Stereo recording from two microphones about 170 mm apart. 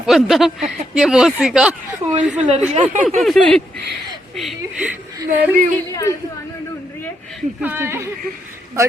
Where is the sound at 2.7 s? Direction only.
40° right (ahead or behind).